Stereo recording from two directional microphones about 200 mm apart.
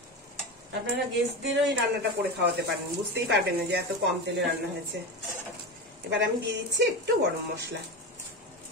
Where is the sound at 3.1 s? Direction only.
60° right (ahead or behind).